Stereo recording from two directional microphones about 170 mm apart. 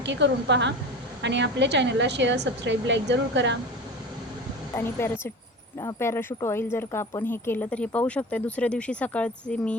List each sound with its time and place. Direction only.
0.0 s a woman's voice: 90° right
4.8 s speech: 15° left (ahead or behind)